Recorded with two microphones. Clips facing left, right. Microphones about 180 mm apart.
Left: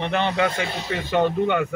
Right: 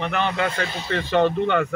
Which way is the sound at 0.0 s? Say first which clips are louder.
Left 2 dB; 20° left (ahead or behind).